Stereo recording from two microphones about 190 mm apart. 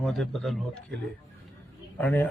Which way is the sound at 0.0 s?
Centre (ahead or behind).